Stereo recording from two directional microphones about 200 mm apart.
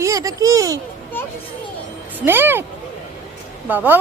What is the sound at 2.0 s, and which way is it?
Speech, 10° right (ahead or behind).